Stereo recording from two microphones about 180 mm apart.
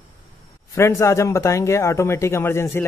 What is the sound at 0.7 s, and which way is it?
Speech, 15° left (ahead or behind).